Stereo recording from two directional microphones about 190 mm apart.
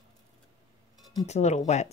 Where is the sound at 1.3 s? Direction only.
35° left (ahead or behind).